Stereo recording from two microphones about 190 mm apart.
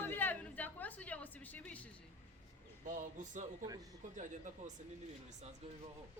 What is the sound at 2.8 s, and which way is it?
Speech, 40° right (ahead or behind).